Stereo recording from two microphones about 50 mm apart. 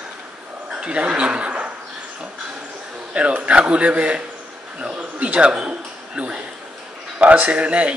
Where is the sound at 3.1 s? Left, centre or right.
Right.